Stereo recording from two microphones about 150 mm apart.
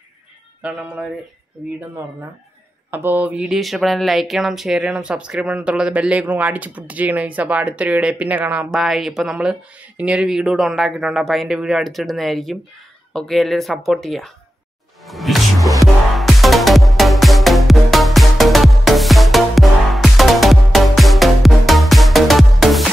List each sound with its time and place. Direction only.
0.6 s speech: 10° right (ahead or behind)
2.9 s speech: 15° right (ahead or behind)
15.0 s music: centre (ahead or behind)